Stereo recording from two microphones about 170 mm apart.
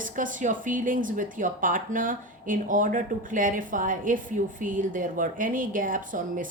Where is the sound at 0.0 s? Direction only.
50° right (ahead or behind).